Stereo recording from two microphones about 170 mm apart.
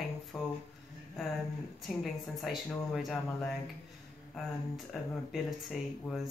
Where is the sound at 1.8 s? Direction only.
Centre (ahead or behind).